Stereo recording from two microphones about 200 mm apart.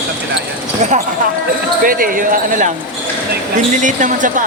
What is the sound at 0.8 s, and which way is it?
Speech, 35° right (ahead or behind).